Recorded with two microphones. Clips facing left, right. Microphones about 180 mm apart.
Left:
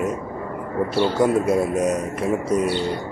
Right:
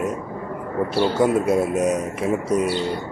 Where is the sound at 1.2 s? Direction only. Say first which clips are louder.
Even; centre (ahead or behind).